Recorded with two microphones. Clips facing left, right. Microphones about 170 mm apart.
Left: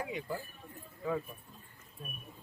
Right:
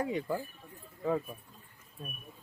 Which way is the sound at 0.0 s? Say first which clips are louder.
Right 6 dB; 40° right (ahead or behind).